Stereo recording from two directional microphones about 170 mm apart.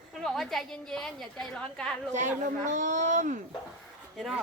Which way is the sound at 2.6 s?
45° right (ahead or behind).